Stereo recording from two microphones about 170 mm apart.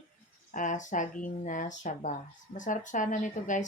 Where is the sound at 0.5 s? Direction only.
50° left (ahead or behind).